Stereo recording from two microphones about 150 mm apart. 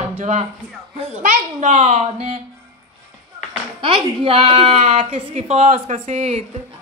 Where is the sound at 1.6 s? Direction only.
50° right (ahead or behind).